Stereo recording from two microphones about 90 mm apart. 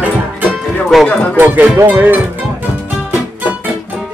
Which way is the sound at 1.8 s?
20° right (ahead or behind).